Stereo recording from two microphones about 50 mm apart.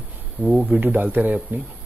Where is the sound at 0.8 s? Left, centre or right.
Right.